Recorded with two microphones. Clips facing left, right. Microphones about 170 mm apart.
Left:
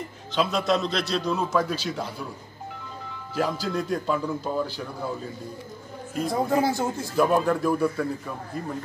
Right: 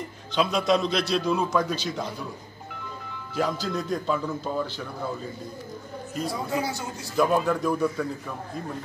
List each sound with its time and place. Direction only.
0.3 s a man's voice: centre (ahead or behind)
3.3 s a man's voice: 5° left (ahead or behind)
6.2 s speech: 50° left (ahead or behind)
7.2 s a man's voice: 5° left (ahead or behind)